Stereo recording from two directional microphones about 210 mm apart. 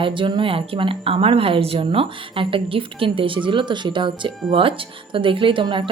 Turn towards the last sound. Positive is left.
turn(degrees=-20)  # may be behind; listen again after turning